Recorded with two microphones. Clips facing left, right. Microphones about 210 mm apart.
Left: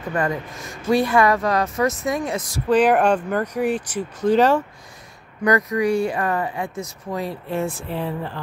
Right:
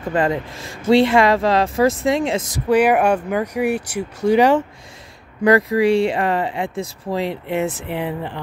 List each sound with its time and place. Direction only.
0.1 s speech: 25° right (ahead or behind)
2.7 s speech: 10° right (ahead or behind)
5.4 s speech: 30° right (ahead or behind)